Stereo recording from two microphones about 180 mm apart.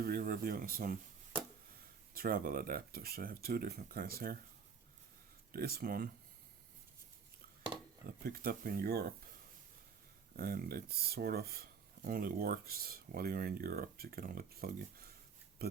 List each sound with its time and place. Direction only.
0.0 s speech: 55° right (ahead or behind)
2.1 s speech: 55° right (ahead or behind)
5.5 s speech: 60° right (ahead or behind)
8.0 s speech: 60° right (ahead or behind)
10.3 s speech: 55° right (ahead or behind)
15.6 s a sound: 60° right (ahead or behind)